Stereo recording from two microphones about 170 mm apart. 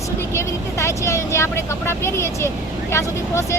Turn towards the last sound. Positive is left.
turn(degrees=15)  # may be behind; listen again after turning